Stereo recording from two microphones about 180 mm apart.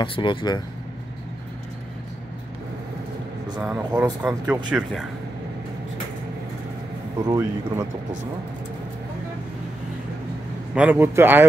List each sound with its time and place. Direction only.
0.0 s speech: 25° left (ahead or behind)
3.7 s speech: 5° right (ahead or behind)
7.2 s speech: 15° right (ahead or behind)
10.7 s speech: 10° right (ahead or behind)